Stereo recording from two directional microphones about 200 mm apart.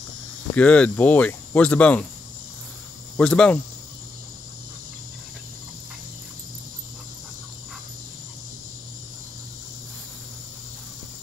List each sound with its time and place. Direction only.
0.6 s speech: 5° left (ahead or behind)
3.2 s speech: 5° left (ahead or behind)